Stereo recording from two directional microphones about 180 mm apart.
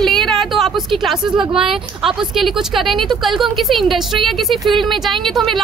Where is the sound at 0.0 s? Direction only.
Centre (ahead or behind).